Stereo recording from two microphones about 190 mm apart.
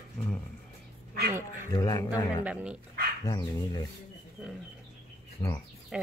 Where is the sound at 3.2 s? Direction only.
20° left (ahead or behind).